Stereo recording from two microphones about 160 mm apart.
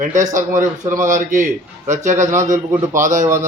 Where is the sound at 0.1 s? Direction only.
50° right (ahead or behind).